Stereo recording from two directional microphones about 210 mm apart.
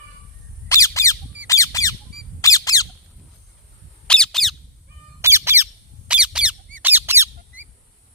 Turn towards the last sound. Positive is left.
turn(degrees=-10)  # may be behind; listen again after turning